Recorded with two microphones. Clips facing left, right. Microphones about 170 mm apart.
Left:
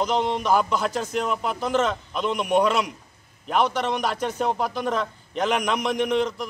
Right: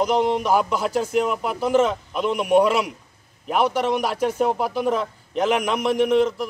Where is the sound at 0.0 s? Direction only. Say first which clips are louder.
Right 4 dB; 10° right (ahead or behind).